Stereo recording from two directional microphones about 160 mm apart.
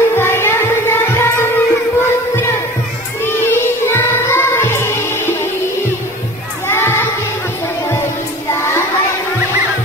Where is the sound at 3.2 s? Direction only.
15° left (ahead or behind).